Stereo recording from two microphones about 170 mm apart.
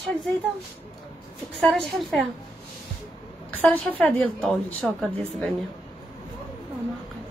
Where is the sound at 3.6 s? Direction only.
10° left (ahead or behind).